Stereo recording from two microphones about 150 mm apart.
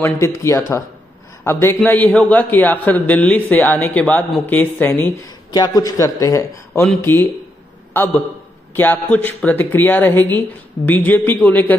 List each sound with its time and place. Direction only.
0.0 s a man's voice: 20° left (ahead or behind)
5.5 s a man's voice: 25° left (ahead or behind)